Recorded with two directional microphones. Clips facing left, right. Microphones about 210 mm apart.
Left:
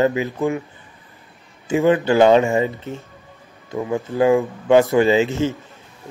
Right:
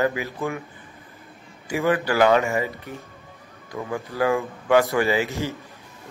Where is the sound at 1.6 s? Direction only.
25° left (ahead or behind).